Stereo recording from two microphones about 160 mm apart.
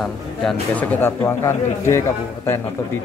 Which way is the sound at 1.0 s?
15° left (ahead or behind).